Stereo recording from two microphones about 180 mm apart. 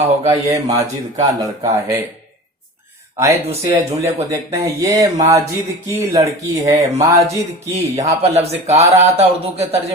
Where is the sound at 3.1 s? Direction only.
15° right (ahead or behind).